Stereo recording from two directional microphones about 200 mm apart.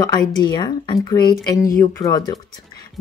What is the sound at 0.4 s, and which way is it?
Speech, 20° left (ahead or behind).